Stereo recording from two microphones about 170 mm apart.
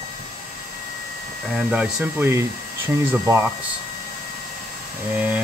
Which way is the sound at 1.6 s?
5° right (ahead or behind).